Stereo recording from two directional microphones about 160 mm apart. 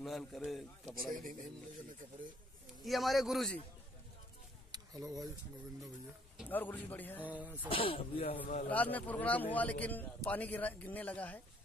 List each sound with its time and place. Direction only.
0.0 s a man's voice: centre (ahead or behind)
2.8 s a man's voice: centre (ahead or behind)
4.7 s a sound: 25° right (ahead or behind)
6.5 s a man's voice: 10° left (ahead or behind)
7.2 s speech: 10° right (ahead or behind)
7.7 s speech: 35° left (ahead or behind)
8.6 s a man's voice: 10° left (ahead or behind)